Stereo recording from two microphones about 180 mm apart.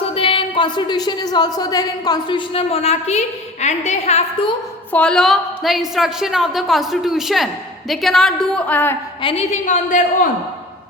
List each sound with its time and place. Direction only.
0.0 s a woman's voice: 30° left (ahead or behind)
4.9 s a woman's voice: 5° left (ahead or behind)
9.2 s a woman's voice: 35° left (ahead or behind)